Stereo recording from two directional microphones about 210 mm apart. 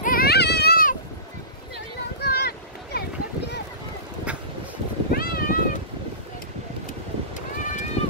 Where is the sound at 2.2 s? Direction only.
50° left (ahead or behind).